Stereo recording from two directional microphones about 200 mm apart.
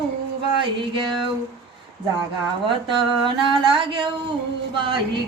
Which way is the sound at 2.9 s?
25° right (ahead or behind).